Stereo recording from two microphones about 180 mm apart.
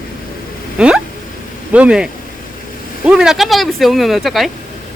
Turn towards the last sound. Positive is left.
turn(degrees=0)  # may be behind; listen again after turning